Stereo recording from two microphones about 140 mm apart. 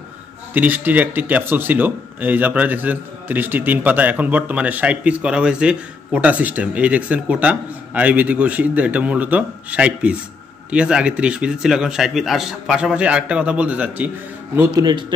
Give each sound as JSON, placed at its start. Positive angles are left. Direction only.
{"t": 0.6, "sound": "speech", "side_deg": -10}
{"t": 14.7, "sound": "a man's voice", "side_deg": -30}